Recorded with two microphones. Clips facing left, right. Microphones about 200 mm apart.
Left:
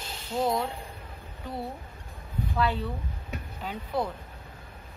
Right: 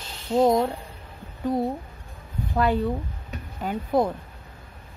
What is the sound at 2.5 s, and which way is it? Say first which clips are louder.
Speech: right 7 dB; 45° right (ahead or behind).